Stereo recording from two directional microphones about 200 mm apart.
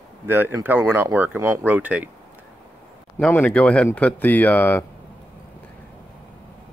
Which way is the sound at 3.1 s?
10° left (ahead or behind).